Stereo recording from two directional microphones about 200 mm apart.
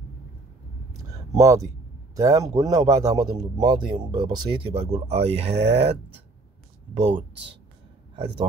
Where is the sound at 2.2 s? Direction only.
15° right (ahead or behind).